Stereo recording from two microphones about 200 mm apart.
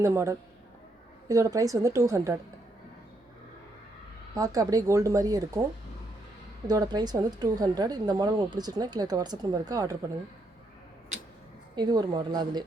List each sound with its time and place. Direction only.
0.0 s speech: 15° right (ahead or behind)
4.4 s speech: 20° right (ahead or behind)
6.7 s a woman's voice: 20° right (ahead or behind)
11.8 s a woman's voice: 20° right (ahead or behind)